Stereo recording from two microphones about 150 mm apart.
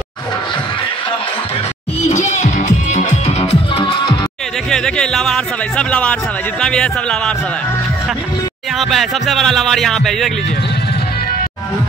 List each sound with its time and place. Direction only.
2.0 s music: 50° left (ahead or behind)
4.6 s music: 5° left (ahead or behind)
8.7 s music: centre (ahead or behind)